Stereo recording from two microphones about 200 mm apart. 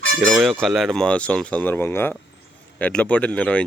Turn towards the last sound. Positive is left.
turn(degrees=5)  # may be behind; listen again after turning